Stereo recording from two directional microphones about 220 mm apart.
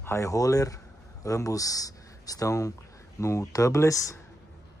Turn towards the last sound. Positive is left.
turn(degrees=15)  # may be behind; listen again after turning